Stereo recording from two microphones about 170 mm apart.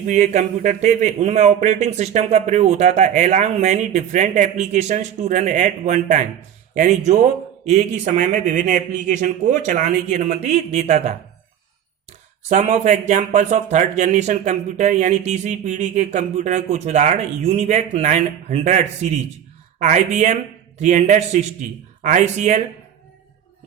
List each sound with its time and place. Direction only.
0.1 s speech: 45° right (ahead or behind)
12.4 s speech: 45° right (ahead or behind)